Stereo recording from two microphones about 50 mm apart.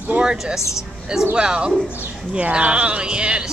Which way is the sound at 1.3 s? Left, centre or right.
Centre.